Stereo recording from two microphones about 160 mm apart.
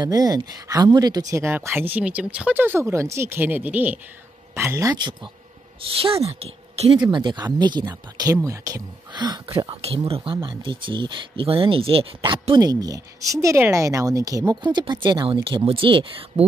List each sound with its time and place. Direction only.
0.0 s speech: 25° right (ahead or behind)
5.9 s speech: 40° right (ahead or behind)
9.8 s speech: 35° right (ahead or behind)